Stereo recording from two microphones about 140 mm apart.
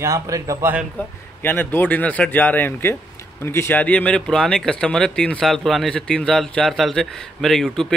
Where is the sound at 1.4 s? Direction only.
15° left (ahead or behind).